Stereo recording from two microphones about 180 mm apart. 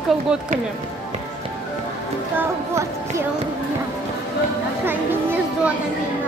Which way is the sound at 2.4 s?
15° right (ahead or behind).